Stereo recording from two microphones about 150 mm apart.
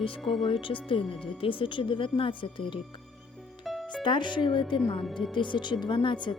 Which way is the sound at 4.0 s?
30° left (ahead or behind).